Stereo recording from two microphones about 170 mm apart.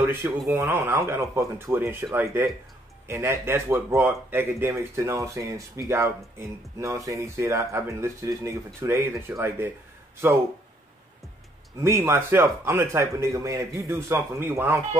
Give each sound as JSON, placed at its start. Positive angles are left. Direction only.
{"t": 0.0, "sound": "speech", "side_deg": -15}
{"t": 11.8, "sound": "speech", "side_deg": -15}